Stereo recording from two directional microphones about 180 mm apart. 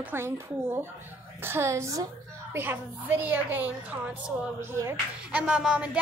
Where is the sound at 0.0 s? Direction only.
15° right (ahead or behind).